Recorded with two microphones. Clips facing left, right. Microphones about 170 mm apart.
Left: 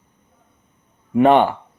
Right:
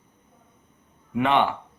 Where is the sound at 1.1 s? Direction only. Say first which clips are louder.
Left 8 dB; 45° left (ahead or behind).